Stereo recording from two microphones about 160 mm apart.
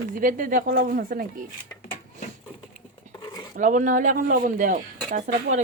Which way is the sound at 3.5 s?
50° right (ahead or behind).